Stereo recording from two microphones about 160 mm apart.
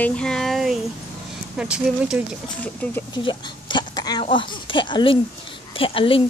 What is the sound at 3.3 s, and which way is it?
Speech, 30° left (ahead or behind).